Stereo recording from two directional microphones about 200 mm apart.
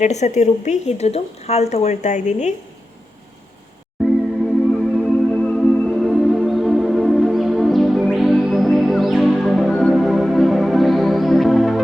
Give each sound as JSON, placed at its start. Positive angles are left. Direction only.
{"t": 0.0, "sound": "a woman's voice", "side_deg": 35}
{"t": 4.0, "sound": "music", "side_deg": 0}